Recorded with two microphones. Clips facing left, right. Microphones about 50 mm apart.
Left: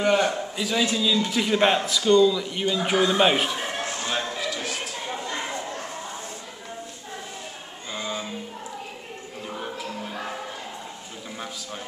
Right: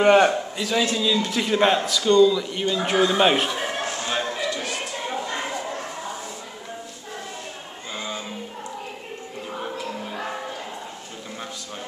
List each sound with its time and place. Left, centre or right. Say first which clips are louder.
0.0 s a man's voice: right 6 dB; right
0.6 s speech: left 1 dB; centre
4.0 s a sound: right 2 dB; centre
7.9 s music: left 1 dB; centre
9.5 s music: right 2 dB; centre